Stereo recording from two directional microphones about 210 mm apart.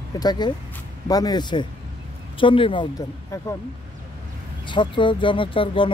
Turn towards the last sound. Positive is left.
turn(degrees=25)  # may be behind; listen again after turning